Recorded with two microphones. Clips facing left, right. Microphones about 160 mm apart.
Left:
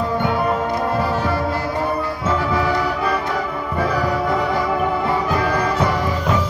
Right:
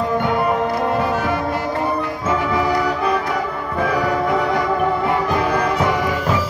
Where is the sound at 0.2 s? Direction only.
Centre (ahead or behind).